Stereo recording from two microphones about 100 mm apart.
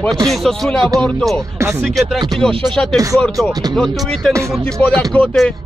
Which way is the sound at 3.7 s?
5° left (ahead or behind).